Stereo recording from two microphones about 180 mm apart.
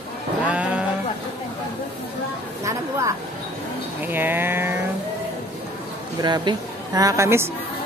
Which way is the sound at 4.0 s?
10° right (ahead or behind).